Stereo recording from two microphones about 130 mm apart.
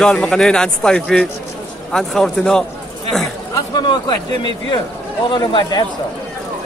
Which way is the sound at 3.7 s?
35° left (ahead or behind).